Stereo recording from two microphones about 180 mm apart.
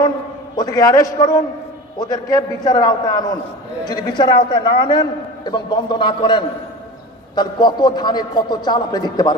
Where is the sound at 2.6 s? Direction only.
20° left (ahead or behind).